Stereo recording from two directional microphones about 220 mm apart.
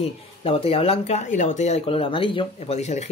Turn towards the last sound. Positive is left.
turn(degrees=30)  # may be behind; listen again after turning